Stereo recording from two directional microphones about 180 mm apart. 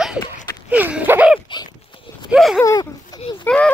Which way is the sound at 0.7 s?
10° right (ahead or behind).